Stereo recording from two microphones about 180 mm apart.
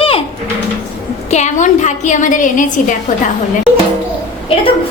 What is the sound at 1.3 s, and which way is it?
A woman's voice, 40° left (ahead or behind).